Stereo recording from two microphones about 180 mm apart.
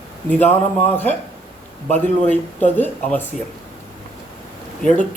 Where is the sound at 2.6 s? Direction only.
10° left (ahead or behind).